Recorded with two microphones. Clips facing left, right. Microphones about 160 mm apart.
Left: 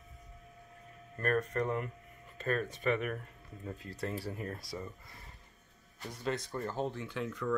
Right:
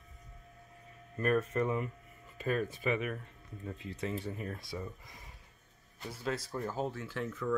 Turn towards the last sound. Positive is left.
turn(degrees=-5)  # may be behind; listen again after turning